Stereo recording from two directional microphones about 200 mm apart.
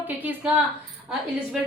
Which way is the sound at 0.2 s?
10° right (ahead or behind).